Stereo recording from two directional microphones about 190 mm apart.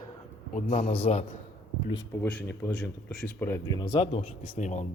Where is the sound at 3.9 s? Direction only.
30° left (ahead or behind).